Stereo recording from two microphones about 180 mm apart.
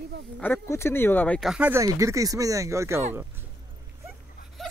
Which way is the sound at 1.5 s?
10° right (ahead or behind).